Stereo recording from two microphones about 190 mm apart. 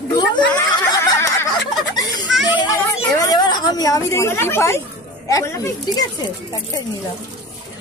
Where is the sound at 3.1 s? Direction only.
20° left (ahead or behind).